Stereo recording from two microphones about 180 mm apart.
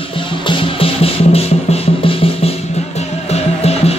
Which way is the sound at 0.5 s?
30° left (ahead or behind).